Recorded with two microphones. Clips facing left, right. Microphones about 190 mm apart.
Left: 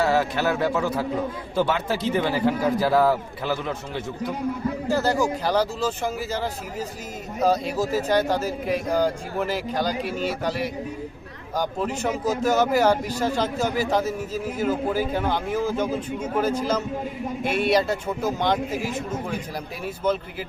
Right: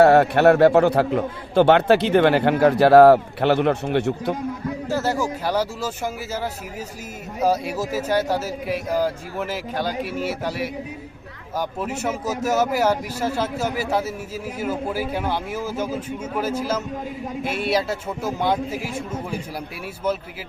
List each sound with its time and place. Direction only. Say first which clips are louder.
0.0 s a man's voice: right 8 dB; 60° right (ahead or behind)
4.9 s speech: left 1 dB; centre (ahead or behind)